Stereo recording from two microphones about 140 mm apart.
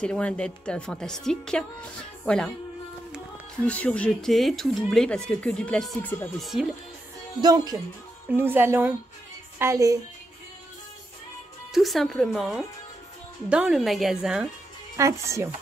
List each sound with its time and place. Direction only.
0.0 s speech: 5° left (ahead or behind)
3.6 s speech: 10° left (ahead or behind)
7.4 s speech: 30° right (ahead or behind)
8.3 s speech: 15° right (ahead or behind)
11.7 s speech: centre (ahead or behind)
15.0 s speech: 20° right (ahead or behind)